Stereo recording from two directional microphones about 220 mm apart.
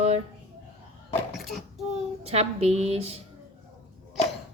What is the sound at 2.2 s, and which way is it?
Speech, 30° right (ahead or behind).